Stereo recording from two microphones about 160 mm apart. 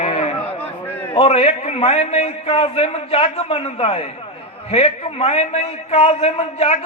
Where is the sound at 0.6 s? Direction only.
10° left (ahead or behind).